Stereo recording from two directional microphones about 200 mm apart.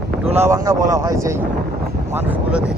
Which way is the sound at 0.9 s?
15° right (ahead or behind).